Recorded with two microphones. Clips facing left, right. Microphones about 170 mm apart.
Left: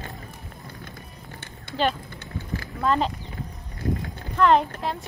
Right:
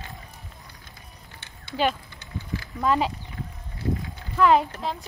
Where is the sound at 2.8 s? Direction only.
10° right (ahead or behind).